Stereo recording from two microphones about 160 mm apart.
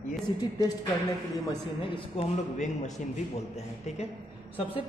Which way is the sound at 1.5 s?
30° left (ahead or behind).